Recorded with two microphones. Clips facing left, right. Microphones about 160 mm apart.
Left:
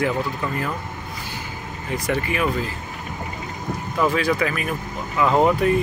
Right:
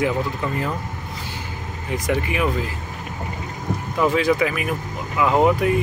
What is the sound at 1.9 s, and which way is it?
Speech, 20° right (ahead or behind).